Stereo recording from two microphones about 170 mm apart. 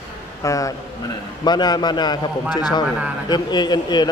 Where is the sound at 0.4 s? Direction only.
20° left (ahead or behind).